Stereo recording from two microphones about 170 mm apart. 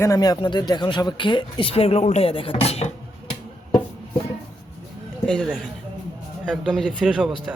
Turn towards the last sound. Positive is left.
turn(degrees=0)  # may be behind; listen again after turning